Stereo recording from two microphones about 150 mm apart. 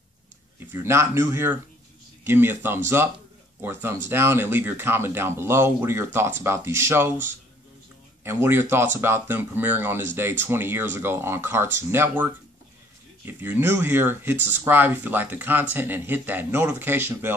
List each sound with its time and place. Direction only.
0.7 s speech: 15° right (ahead or behind)